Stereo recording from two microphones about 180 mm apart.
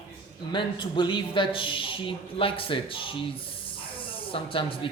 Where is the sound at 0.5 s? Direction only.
25° left (ahead or behind).